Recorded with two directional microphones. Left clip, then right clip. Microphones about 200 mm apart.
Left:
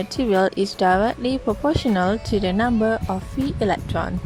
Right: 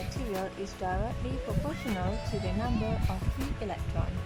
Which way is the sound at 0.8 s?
45° left (ahead or behind).